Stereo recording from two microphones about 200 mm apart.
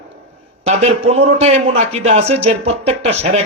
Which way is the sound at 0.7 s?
35° right (ahead or behind).